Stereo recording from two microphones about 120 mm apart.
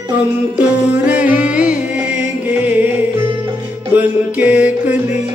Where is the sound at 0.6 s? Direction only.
10° right (ahead or behind).